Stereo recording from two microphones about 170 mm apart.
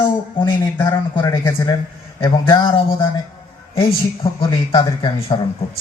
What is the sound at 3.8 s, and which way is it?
Speech, 30° left (ahead or behind).